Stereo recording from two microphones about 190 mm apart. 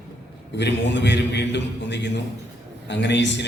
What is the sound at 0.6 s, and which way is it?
A man's voice, 70° left (ahead or behind).